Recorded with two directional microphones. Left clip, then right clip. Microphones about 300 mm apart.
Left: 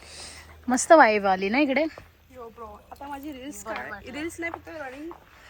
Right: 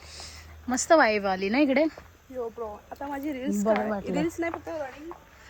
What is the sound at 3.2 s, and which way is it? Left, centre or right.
Speech, right.